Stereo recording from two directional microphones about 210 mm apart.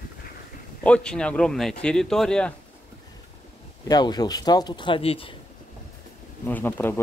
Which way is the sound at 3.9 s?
20° left (ahead or behind).